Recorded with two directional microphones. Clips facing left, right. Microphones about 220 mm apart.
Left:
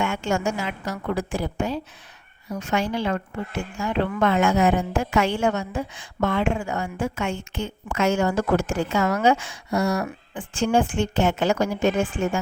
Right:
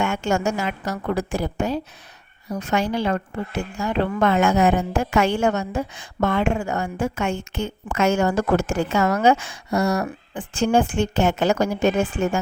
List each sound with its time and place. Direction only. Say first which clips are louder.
0.0 s a woman's voice: right 2 dB; 45° right (ahead or behind)